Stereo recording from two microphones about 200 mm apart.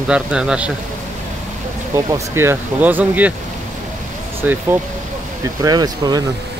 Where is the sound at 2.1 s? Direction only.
15° right (ahead or behind).